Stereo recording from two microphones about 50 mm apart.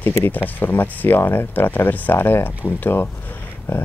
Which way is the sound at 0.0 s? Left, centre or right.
Left.